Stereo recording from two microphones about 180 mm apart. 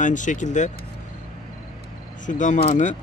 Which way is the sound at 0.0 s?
45° left (ahead or behind).